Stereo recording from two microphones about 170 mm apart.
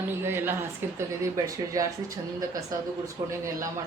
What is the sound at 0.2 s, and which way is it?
A woman's voice, 15° right (ahead or behind).